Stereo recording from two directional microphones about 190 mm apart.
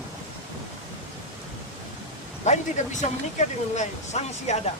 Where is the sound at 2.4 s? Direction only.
40° left (ahead or behind).